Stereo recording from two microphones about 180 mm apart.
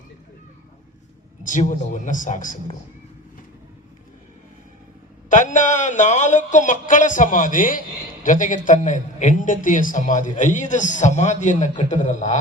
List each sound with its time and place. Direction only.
1.5 s a man's voice: 45° left (ahead or behind)
5.3 s a man's voice: 45° left (ahead or behind)